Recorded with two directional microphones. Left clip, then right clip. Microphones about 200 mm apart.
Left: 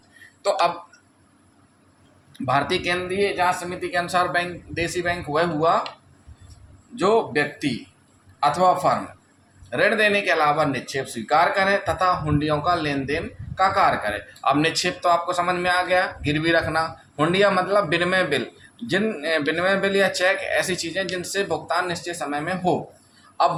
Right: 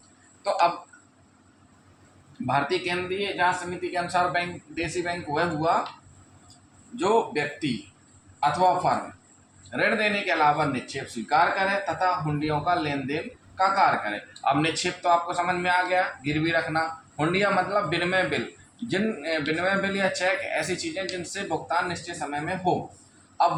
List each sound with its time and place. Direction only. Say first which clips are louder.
2.5 s speech: left 4 dB; 55° left (ahead or behind)
6.9 s speech: left 4 dB; 55° left (ahead or behind)